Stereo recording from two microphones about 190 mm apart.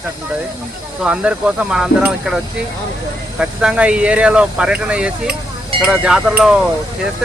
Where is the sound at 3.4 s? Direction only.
5° right (ahead or behind).